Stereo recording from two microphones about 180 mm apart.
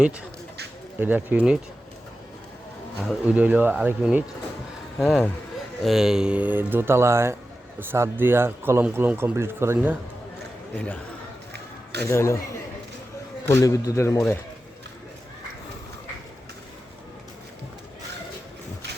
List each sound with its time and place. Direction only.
0.9 s speech: 10° right (ahead or behind)
3.0 s speech: 5° right (ahead or behind)
10.8 s a man's voice: 5° left (ahead or behind)
12.0 s a man's voice: 15° left (ahead or behind)